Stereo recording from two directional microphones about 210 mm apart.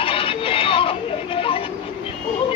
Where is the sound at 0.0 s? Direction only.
25° left (ahead or behind).